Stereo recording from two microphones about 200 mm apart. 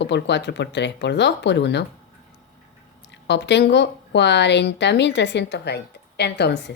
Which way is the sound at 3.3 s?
60° left (ahead or behind).